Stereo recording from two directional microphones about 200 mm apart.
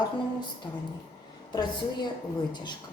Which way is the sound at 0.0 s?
20° left (ahead or behind).